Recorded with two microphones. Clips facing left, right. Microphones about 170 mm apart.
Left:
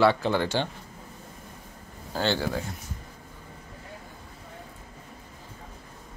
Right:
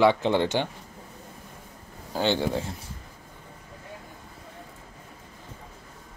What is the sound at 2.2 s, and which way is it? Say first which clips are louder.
Speech: right 2 dB; 15° right (ahead or behind).